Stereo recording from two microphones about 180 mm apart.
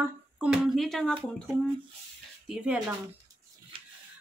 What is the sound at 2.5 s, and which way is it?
Speech, 5° right (ahead or behind).